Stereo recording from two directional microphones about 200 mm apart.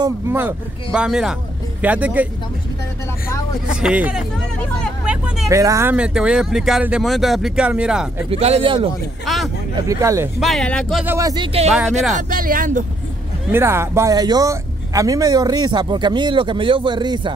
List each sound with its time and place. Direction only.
0.0 s speech: 10° right (ahead or behind)
3.7 s speech: 5° right (ahead or behind)
5.0 s vehicle: 5° right (ahead or behind)
5.6 s speech: 15° right (ahead or behind)
8.3 s speech: 30° right (ahead or behind)
9.2 s speech: centre (ahead or behind)
9.8 s speech: 15° right (ahead or behind)
10.4 s speech: centre (ahead or behind)
11.1 s speech: 15° right (ahead or behind)
12.2 s speech: 45° right (ahead or behind)
13.5 s speech: 10° right (ahead or behind)